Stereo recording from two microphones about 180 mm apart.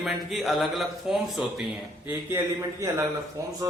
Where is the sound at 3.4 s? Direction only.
15° right (ahead or behind).